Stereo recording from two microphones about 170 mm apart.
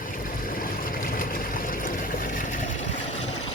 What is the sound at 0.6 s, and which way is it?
Vehicle, 60° left (ahead or behind).